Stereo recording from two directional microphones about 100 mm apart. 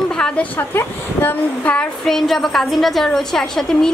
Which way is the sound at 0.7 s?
20° left (ahead or behind).